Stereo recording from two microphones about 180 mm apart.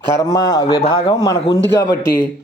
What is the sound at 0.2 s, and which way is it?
A man's voice, 20° left (ahead or behind).